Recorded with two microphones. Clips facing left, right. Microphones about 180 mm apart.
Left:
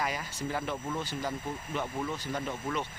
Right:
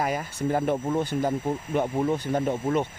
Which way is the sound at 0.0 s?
50° right (ahead or behind).